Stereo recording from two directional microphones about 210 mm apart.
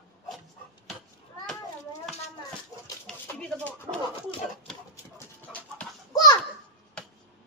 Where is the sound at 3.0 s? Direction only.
5° left (ahead or behind).